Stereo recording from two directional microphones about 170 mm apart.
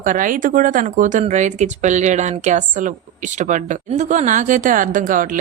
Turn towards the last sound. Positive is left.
turn(degrees=-50)  # may be behind; listen again after turning